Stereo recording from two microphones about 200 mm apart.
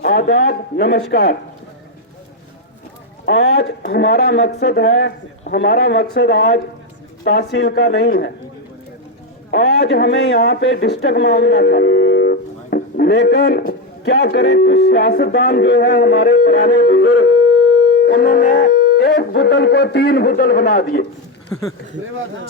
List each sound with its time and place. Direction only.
0.0 s speech: 50° left (ahead or behind)
3.2 s speech: 60° left (ahead or behind)
9.5 s a man's voice: 55° left (ahead or behind)